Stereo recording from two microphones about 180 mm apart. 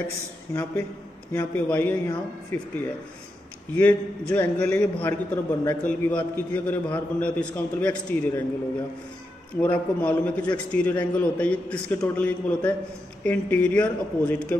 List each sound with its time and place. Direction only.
0.5 s a man's voice: 15° left (ahead or behind)
3.7 s a man's voice: 10° left (ahead or behind)
9.6 s a man's voice: 10° left (ahead or behind)